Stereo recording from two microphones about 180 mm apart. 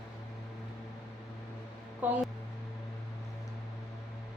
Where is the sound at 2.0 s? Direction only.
10° right (ahead or behind).